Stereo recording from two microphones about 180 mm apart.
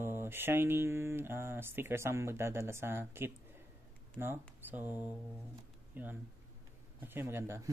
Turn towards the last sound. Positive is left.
turn(degrees=-15)  # may be behind; listen again after turning